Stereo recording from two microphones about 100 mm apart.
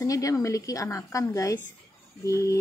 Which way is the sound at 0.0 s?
35° left (ahead or behind).